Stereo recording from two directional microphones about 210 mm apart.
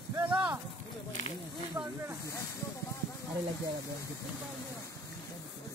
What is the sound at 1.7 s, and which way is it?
Speech, 15° right (ahead or behind).